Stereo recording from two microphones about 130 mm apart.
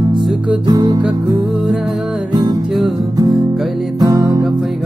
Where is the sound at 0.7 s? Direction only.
35° right (ahead or behind).